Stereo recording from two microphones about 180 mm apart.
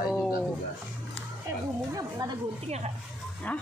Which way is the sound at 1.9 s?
20° right (ahead or behind).